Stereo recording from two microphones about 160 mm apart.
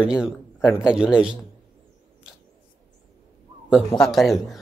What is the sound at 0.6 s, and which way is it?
Speech, 20° left (ahead or behind).